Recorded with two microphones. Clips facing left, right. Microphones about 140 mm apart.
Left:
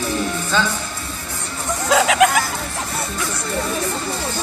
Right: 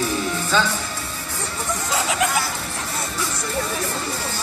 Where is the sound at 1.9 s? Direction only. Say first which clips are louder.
Left 9 dB; 90° left.